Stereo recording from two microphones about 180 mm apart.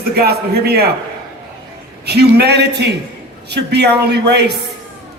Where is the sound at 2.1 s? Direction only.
65° right (ahead or behind).